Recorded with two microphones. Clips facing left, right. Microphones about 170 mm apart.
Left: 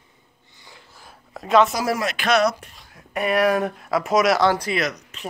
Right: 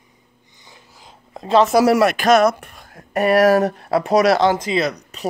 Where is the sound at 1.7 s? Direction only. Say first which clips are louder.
Right 10 dB; 70° right (ahead or behind).